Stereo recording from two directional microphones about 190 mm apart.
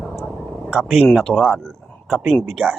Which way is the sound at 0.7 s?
5° right (ahead or behind).